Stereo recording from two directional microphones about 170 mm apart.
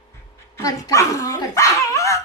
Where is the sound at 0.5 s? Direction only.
20° left (ahead or behind).